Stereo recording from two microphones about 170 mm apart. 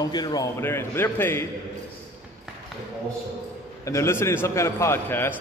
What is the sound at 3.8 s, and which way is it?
A man's voice, 15° left (ahead or behind).